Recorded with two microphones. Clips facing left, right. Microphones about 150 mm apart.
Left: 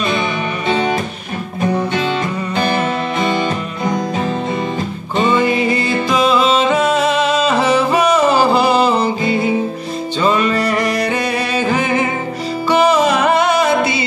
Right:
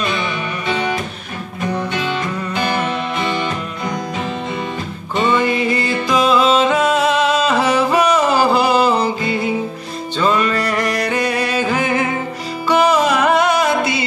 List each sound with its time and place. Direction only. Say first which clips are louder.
1.6 s music: left 4 dB; 25° left (ahead or behind)
3.9 s music: left 5 dB; 45° left (ahead or behind)
5.4 s music: left 2 dB; 5° left (ahead or behind)